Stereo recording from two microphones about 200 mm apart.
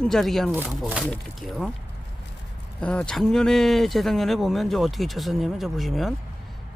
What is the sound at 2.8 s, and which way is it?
Speech, 5° left (ahead or behind).